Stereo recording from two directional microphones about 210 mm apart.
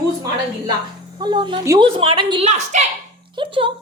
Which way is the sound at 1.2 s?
20° right (ahead or behind).